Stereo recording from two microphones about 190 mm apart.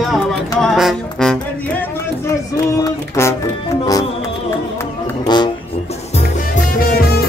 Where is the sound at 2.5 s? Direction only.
15° left (ahead or behind).